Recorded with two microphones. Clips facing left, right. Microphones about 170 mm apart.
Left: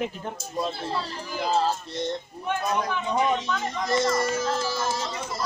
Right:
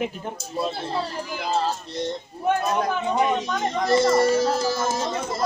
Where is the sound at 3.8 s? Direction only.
30° right (ahead or behind); by 5.4 s 45° right (ahead or behind).